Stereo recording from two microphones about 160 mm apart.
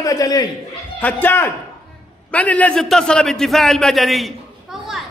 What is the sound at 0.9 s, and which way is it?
A man's voice, 10° left (ahead or behind).